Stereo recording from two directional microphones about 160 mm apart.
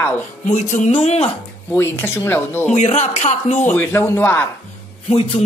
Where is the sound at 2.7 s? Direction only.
45° left (ahead or behind).